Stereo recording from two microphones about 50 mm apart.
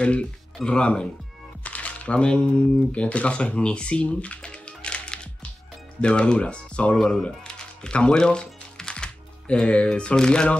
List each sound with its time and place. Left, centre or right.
0.0 s speech: left
7.0 s speech: centre
7.2 s music: centre